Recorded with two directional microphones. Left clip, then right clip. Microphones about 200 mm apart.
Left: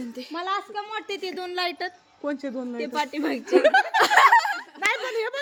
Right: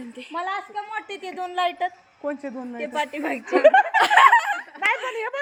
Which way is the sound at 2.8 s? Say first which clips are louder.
Right 1 dB; 15° left (ahead or behind).